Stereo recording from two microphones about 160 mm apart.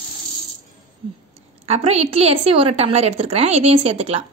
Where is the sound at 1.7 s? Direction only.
45° right (ahead or behind).